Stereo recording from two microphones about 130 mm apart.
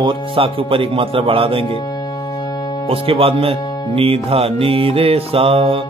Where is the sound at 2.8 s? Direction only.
45° right (ahead or behind).